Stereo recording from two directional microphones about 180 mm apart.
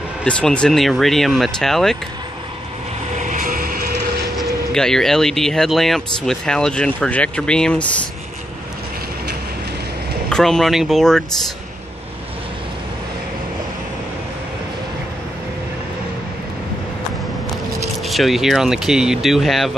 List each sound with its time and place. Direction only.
0.2 s speech: 5° left (ahead or behind)
3.2 s a sound: 45° right (ahead or behind)
4.4 s speech: 5° left (ahead or behind)
10.3 s speech: centre (ahead or behind)
18.0 s speech: centre (ahead or behind)